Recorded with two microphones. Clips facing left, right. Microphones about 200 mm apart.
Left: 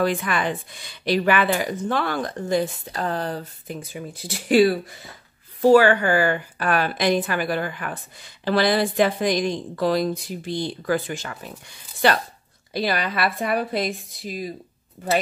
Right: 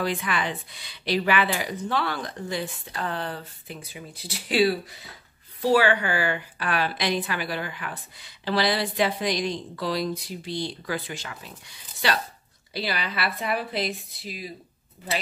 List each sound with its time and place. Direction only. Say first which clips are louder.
0.0 s a woman's voice: left 5 dB; 45° left (ahead or behind)